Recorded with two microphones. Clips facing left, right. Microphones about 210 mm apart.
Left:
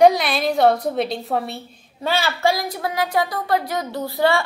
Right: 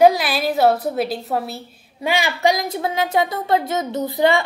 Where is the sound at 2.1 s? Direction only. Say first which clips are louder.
Right 1 dB; 15° right (ahead or behind).